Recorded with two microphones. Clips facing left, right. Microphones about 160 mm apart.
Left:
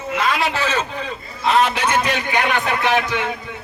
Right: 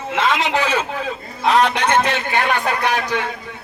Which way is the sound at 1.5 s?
5° left (ahead or behind).